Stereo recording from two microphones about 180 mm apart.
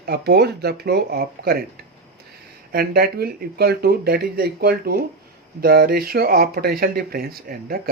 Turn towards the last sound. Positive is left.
turn(degrees=-55)  # may be behind; listen again after turning